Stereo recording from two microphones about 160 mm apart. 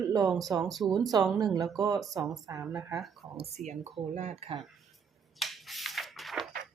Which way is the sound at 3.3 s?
40° right (ahead or behind).